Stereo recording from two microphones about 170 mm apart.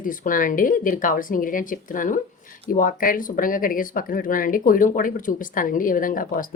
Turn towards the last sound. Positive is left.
turn(degrees=55)  # may be behind; listen again after turning